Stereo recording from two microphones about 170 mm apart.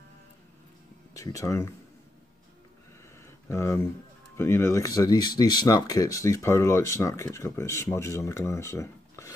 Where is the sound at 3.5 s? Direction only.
15° left (ahead or behind).